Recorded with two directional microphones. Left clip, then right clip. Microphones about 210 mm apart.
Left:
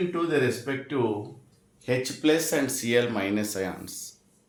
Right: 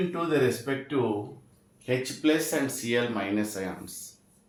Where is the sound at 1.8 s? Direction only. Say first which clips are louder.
Left 2 dB; 55° left (ahead or behind).